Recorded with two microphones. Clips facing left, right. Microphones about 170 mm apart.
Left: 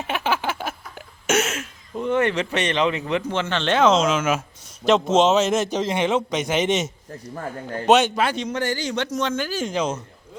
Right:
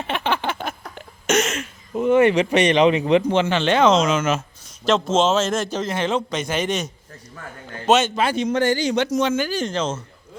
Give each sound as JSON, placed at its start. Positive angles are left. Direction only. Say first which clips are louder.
{"t": 0.0, "sound": "a sound", "louder": "right 1 dB", "side_deg": 5}
{"t": 2.0, "sound": "a man's voice", "louder": "right 6 dB", "side_deg": -10}
{"t": 7.3, "sound": "a man's voice", "louder": "left 7 dB", "side_deg": 40}
{"t": 7.9, "sound": "a man's voice", "louder": "left 1 dB", "side_deg": 15}
{"t": 8.2, "sound": "a man's voice", "louder": "right 3 dB", "side_deg": -5}
{"t": 8.5, "sound": "speech", "louder": "right 5 dB", "side_deg": -20}